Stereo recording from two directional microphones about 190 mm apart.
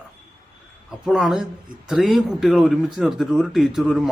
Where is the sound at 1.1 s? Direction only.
Centre (ahead or behind).